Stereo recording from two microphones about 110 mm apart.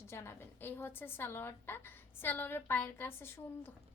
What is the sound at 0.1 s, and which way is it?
A woman's voice, 20° left (ahead or behind).